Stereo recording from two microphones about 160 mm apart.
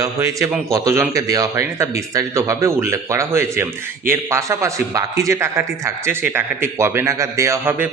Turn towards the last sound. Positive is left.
turn(degrees=-15)  # may be behind; listen again after turning